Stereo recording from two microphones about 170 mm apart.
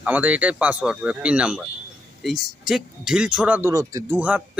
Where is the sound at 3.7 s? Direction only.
20° right (ahead or behind).